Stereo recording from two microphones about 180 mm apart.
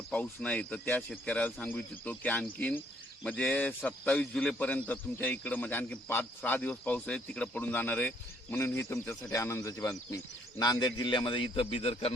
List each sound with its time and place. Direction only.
0.1 s a man's voice: 5° left (ahead or behind); by 12.1 s 30° left (ahead or behind)